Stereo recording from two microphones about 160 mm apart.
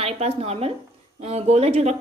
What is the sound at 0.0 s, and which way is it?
A woman's voice, 40° right (ahead or behind).